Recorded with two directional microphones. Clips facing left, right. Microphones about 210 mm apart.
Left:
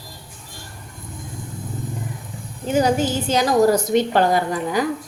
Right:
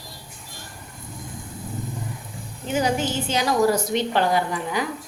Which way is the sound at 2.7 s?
40° left (ahead or behind).